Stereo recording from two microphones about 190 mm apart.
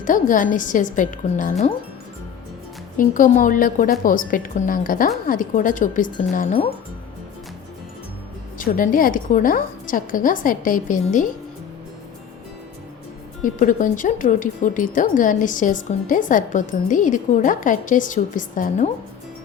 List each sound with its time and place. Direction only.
0.0 s a woman's voice: 45° left (ahead or behind)
3.0 s a woman's voice: 45° left (ahead or behind)
8.5 s a woman's voice: 45° left (ahead or behind)
13.4 s a woman's voice: 45° left (ahead or behind)